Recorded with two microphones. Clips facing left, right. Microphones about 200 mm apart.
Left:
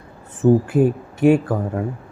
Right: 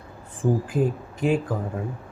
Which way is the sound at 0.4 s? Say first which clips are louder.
Left 9 dB; 55° left (ahead or behind).